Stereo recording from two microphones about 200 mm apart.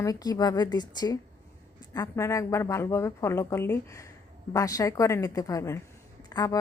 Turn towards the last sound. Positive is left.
turn(degrees=20)  # may be behind; listen again after turning